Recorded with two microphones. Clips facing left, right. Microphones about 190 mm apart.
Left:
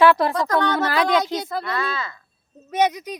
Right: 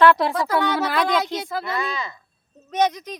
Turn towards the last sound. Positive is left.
turn(degrees=10)  # may be behind; listen again after turning